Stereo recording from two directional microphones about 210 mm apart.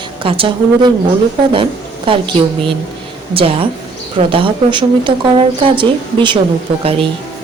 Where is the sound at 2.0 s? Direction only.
25° right (ahead or behind).